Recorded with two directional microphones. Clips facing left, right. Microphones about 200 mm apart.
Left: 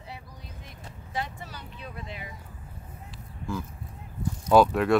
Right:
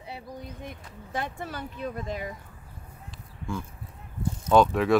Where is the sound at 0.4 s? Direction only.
55° right (ahead or behind).